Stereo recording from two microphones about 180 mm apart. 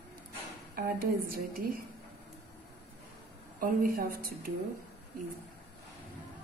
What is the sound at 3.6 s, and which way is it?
Speech, 50° right (ahead or behind).